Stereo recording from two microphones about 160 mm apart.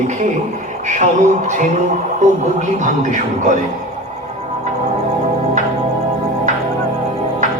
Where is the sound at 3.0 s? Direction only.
50° right (ahead or behind).